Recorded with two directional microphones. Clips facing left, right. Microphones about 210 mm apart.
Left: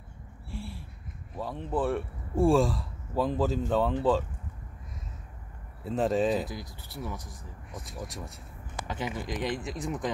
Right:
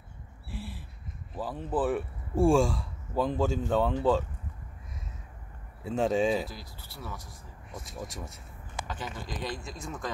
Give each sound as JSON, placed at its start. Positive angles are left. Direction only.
{"t": 0.5, "sound": "a sound", "side_deg": 0}
{"t": 1.3, "sound": "speech", "side_deg": 0}
{"t": 5.9, "sound": "speech", "side_deg": 0}
{"t": 6.4, "sound": "speech", "side_deg": 20}
{"t": 7.2, "sound": "speech", "side_deg": 0}
{"t": 8.8, "sound": "speech", "side_deg": 20}